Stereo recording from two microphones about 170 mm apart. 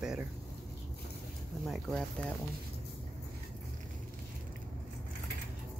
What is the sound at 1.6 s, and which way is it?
Speech, centre (ahead or behind).